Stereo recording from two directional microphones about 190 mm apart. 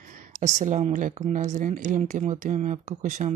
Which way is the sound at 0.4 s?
40° right (ahead or behind).